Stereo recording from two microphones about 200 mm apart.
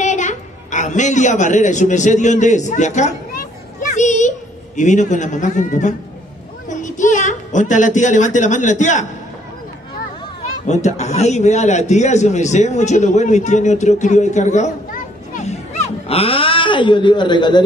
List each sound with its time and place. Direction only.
0.0 s a woman's voice: 35° left (ahead or behind)
3.8 s a sound: 35° left (ahead or behind)
4.7 s a man's voice: 40° left (ahead or behind)
10.7 s a man's voice: 35° left (ahead or behind)